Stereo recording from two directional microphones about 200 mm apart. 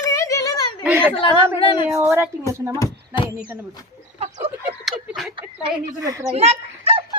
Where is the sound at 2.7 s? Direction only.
15° left (ahead or behind).